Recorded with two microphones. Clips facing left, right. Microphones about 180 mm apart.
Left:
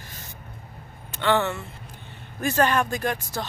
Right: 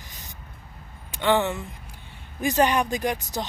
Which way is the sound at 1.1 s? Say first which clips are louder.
Right 1 dB; 15° right (ahead or behind).